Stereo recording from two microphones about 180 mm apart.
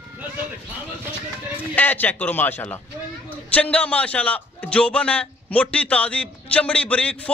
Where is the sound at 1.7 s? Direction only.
10° left (ahead or behind).